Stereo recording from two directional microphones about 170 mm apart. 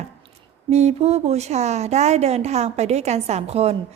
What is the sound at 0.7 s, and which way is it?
A woman's voice, 40° right (ahead or behind).